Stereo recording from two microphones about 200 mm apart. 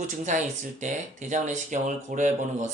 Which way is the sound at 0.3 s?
35° right (ahead or behind).